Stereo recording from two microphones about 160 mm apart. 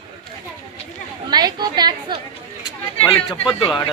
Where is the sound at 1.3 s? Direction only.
25° right (ahead or behind).